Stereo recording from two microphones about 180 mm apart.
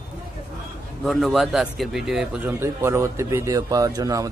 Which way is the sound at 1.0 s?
Centre (ahead or behind).